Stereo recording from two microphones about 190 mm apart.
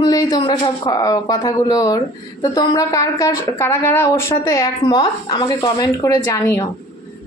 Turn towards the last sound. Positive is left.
turn(degrees=15)  # may be behind; listen again after turning